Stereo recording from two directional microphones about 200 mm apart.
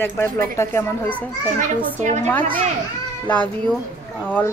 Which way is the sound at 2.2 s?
10° left (ahead or behind).